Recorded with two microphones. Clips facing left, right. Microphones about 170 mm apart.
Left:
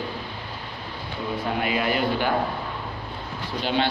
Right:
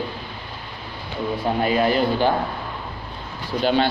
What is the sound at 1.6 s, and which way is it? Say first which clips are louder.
Speech: right 6 dB; 35° right (ahead or behind).